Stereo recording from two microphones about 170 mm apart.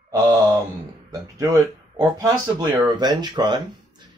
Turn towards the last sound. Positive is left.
turn(degrees=-25)  # may be behind; listen again after turning